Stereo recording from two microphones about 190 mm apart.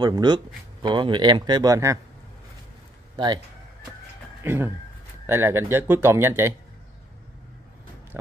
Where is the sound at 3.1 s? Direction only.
25° right (ahead or behind).